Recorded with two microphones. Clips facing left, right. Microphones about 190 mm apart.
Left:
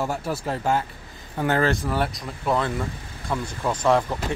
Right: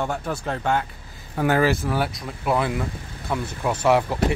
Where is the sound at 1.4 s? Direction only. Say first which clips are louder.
Right 2 dB; 10° right (ahead or behind).